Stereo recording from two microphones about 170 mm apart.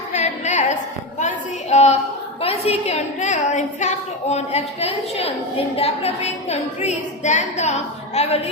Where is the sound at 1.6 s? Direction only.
40° left (ahead or behind).